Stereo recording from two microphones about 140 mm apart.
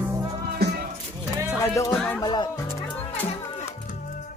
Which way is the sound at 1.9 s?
5° left (ahead or behind).